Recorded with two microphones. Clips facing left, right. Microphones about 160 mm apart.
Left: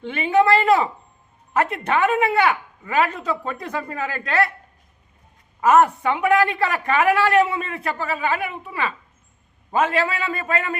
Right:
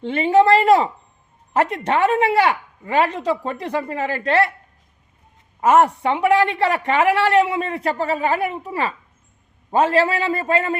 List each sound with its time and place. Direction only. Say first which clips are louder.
0.0 s a sound: right 3 dB; 30° right (ahead or behind)
1.5 s a woman's voice: right 2 dB; 35° right (ahead or behind)
5.5 s a woman's voice: right 1 dB; 30° right (ahead or behind)